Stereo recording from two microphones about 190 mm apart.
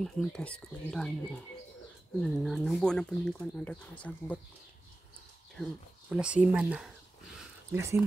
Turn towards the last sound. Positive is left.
turn(degrees=-15)  # may be behind; listen again after turning